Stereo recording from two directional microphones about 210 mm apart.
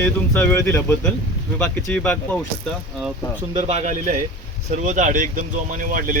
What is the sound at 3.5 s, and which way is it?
Speech, 25° right (ahead or behind).